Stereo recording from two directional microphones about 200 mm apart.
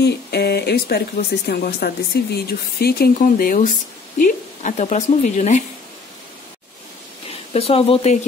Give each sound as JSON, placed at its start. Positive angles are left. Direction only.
{"t": 0.0, "sound": "a woman's voice", "side_deg": 55}
{"t": 7.2, "sound": "speech", "side_deg": 30}